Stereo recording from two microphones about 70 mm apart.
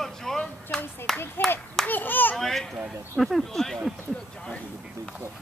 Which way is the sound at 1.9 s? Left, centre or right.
Left.